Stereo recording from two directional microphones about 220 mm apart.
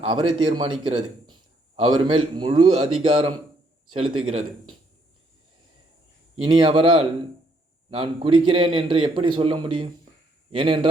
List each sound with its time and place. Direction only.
0.0 s a man's voice: 25° right (ahead or behind)
6.3 s a man's voice: 20° right (ahead or behind)